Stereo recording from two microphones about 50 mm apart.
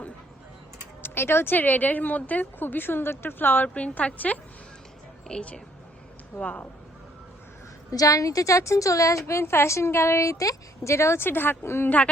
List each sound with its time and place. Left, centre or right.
1.0 s speech: left
1.5 s a woman's voice: left
3.8 s a woman's voice: left
8.2 s a woman's voice: left
10.8 s speech: left